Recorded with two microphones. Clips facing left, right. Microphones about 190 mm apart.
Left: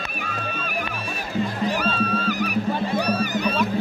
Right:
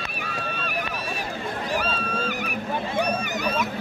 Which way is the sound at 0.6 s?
45° left (ahead or behind).